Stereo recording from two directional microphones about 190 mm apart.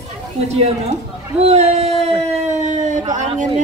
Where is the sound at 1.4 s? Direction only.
35° right (ahead or behind).